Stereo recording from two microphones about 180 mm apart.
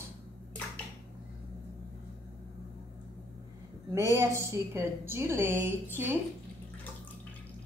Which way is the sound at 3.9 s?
15° right (ahead or behind).